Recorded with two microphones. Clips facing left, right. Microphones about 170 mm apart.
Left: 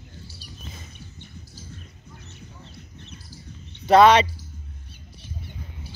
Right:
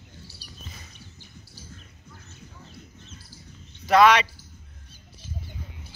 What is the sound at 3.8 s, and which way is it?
Speech, 30° left (ahead or behind).